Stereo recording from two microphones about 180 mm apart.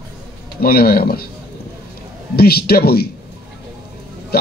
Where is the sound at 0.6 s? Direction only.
55° left (ahead or behind).